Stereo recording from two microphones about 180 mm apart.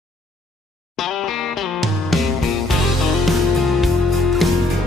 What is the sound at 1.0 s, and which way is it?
Music, centre (ahead or behind).